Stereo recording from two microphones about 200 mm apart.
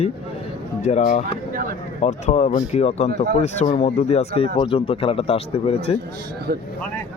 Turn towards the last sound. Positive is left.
turn(degrees=-55)  # may be behind; listen again after turning